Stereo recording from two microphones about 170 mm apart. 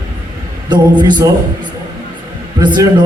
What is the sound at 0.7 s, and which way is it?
Speech, 25° right (ahead or behind).